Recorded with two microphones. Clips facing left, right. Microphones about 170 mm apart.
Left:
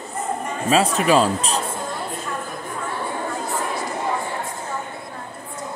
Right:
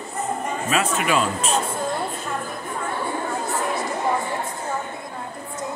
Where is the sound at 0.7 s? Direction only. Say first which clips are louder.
Left 6 dB; 35° left (ahead or behind).